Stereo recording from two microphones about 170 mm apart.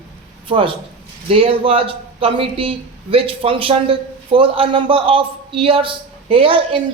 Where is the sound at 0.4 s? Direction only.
30° right (ahead or behind).